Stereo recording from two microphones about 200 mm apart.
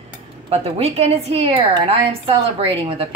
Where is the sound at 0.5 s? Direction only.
30° right (ahead or behind).